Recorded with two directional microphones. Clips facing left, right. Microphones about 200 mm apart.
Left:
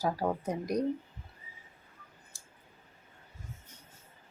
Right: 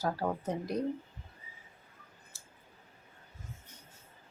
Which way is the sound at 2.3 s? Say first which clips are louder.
Even; 15° left (ahead or behind).